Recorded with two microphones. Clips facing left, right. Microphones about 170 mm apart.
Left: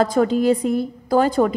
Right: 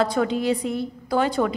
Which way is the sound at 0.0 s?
45° left (ahead or behind).